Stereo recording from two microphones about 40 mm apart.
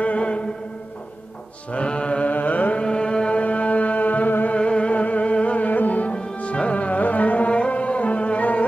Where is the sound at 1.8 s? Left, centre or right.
Left.